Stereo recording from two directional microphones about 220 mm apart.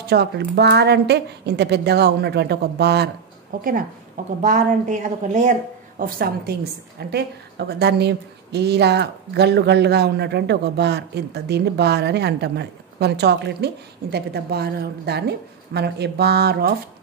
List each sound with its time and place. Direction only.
0.0 s a woman's voice: 45° right (ahead or behind)